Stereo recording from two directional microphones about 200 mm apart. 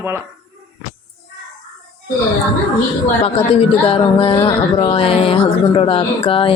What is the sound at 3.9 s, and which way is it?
Music, 25° left (ahead or behind).